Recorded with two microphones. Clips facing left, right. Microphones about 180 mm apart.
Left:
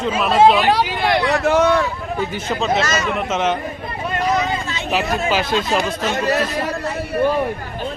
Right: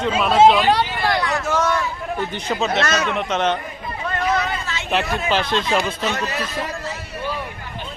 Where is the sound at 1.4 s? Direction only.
60° left (ahead or behind).